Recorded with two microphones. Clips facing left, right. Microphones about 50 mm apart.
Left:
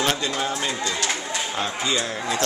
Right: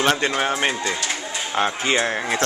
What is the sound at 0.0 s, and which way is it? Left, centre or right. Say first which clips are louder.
A man's voice: right 4 dB; right.